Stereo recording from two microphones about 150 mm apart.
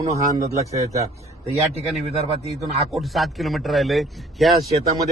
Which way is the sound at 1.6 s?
Centre (ahead or behind).